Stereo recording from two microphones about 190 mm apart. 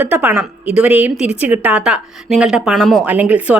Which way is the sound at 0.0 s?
10° right (ahead or behind).